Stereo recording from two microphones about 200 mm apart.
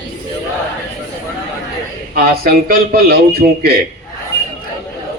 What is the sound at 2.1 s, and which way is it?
A man's voice, 50° right (ahead or behind).